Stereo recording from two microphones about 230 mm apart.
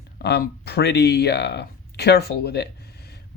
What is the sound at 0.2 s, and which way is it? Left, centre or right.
Speech, left.